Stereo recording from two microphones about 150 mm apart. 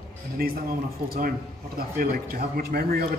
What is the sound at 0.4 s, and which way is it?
Speech, 90° right.